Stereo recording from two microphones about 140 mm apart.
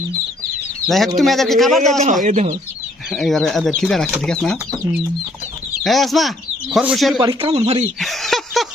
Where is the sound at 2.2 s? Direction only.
60° right (ahead or behind).